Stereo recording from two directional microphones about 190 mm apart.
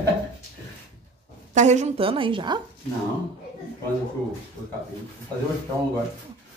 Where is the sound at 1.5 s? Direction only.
40° right (ahead or behind).